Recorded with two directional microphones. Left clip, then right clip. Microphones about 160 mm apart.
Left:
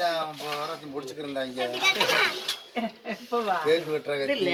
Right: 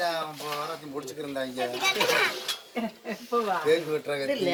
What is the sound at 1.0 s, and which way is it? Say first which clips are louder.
Speech: left 1 dB; 5° right (ahead or behind).